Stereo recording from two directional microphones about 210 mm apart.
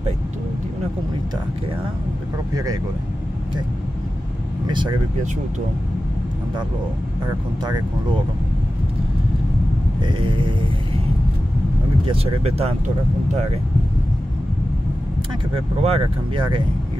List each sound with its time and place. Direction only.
2.5 s speech: 15° right (ahead or behind)
4.6 s speech: 20° right (ahead or behind)
10.0 s speech: 25° right (ahead or behind)
12.1 s speech: 30° right (ahead or behind)
15.5 s speech: 30° right (ahead or behind)